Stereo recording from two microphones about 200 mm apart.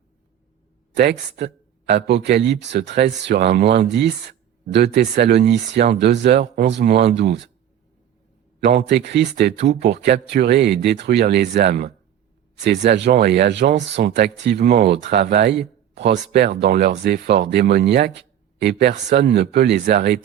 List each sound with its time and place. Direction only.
1.9 s speech: 60° right (ahead or behind)
8.6 s speech: 55° right (ahead or behind)